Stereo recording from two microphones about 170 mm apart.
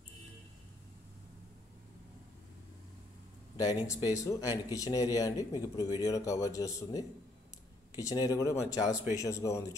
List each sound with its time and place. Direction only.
3.5 s speech: 20° left (ahead or behind)